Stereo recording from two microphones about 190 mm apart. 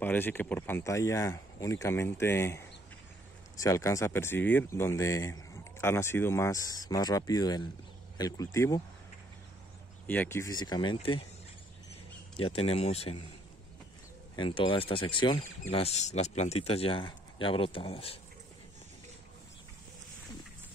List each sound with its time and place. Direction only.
0.0 s speech: 10° left (ahead or behind)
10.0 s speech: 10° left (ahead or behind); by 11.2 s 30° left (ahead or behind)
12.4 s speech: 30° left (ahead or behind)
14.3 s speech: 25° left (ahead or behind)